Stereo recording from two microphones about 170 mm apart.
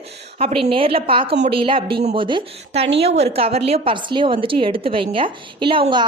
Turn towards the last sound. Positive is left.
turn(degrees=-30)  # may be behind; listen again after turning